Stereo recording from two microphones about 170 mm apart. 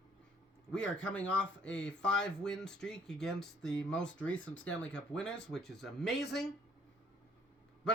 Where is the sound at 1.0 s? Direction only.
10° left (ahead or behind).